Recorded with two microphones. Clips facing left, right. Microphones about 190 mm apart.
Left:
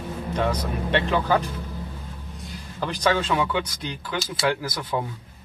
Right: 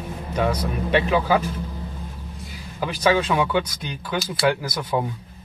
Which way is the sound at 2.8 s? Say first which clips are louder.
Right 3 dB; 10° right (ahead or behind).